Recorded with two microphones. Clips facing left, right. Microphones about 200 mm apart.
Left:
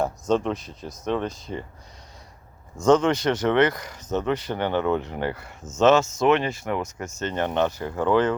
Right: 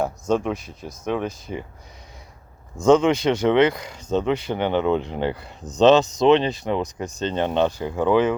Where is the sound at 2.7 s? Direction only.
10° right (ahead or behind).